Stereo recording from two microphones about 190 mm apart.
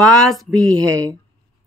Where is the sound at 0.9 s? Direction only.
10° left (ahead or behind).